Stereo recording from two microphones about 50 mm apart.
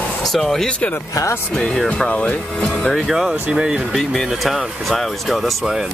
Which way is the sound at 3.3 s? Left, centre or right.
Centre.